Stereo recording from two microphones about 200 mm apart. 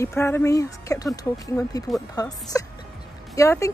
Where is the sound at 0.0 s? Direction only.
15° left (ahead or behind).